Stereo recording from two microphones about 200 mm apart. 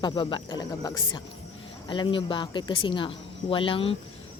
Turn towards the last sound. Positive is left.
turn(degrees=25)  # may be behind; listen again after turning